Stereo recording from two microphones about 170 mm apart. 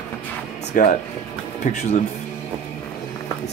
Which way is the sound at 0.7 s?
50° left (ahead or behind).